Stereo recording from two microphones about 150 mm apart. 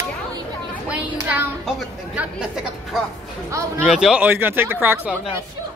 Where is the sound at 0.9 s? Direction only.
10° right (ahead or behind).